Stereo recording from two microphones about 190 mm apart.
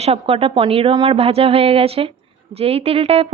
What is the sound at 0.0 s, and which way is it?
A woman's voice, 30° right (ahead or behind).